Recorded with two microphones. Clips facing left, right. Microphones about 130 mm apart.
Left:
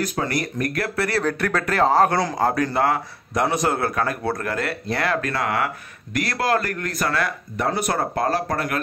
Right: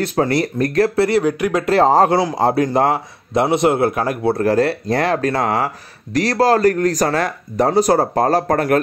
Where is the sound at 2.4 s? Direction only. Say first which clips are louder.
Right 4 dB; 30° right (ahead or behind).